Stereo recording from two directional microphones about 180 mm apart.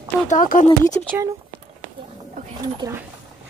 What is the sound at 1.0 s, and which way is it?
Speech, 10° left (ahead or behind).